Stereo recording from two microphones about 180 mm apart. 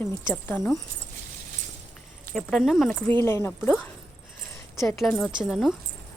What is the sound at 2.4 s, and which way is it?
Speech, centre (ahead or behind).